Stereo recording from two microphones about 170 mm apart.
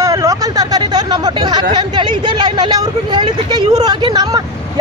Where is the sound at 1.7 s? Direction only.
25° right (ahead or behind).